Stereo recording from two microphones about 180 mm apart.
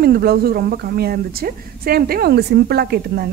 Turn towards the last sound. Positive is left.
turn(degrees=-65)  # may be behind; listen again after turning